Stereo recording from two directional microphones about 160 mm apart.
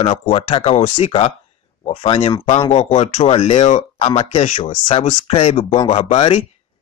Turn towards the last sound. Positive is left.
turn(degrees=35)  # may be behind; listen again after turning